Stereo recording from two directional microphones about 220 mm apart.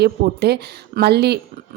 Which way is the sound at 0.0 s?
50° right (ahead or behind).